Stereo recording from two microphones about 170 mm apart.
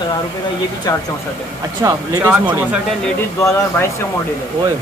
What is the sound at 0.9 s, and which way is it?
Speech, 20° left (ahead or behind).